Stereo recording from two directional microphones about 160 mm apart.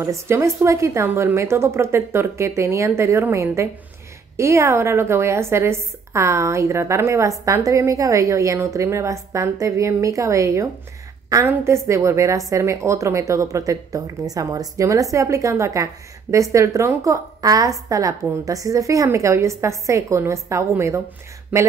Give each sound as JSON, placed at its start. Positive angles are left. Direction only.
{"t": 0.0, "sound": "a woman's voice", "side_deg": -20}